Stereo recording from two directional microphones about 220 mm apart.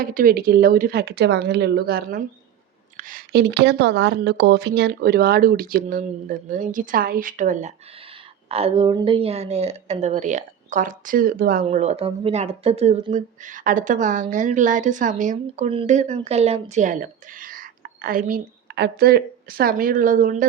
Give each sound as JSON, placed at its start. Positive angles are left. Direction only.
{"t": 0.0, "sound": "speech", "side_deg": -40}
{"t": 11.6, "sound": "a woman's voice", "side_deg": -30}